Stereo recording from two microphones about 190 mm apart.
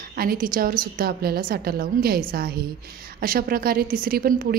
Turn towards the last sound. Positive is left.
turn(degrees=-50)  # may be behind; listen again after turning